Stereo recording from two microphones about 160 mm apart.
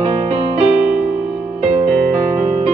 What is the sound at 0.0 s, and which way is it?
Music, 40° right (ahead or behind).